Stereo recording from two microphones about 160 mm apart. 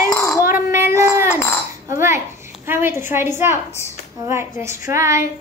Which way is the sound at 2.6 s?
15° right (ahead or behind).